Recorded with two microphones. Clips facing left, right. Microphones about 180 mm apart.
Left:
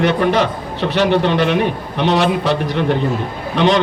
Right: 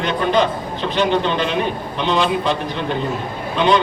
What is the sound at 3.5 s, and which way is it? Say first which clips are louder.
Speech: left 2 dB; 80° left.